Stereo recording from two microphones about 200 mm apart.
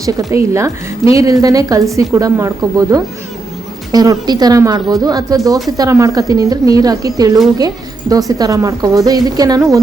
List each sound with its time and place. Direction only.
0.0 s a woman's voice: 15° right (ahead or behind)